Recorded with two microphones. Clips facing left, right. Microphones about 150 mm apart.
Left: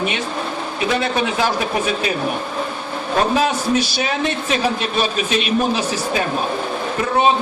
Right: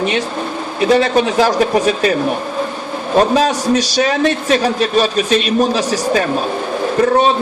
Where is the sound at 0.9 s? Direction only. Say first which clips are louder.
Right 7 dB; 40° right (ahead or behind).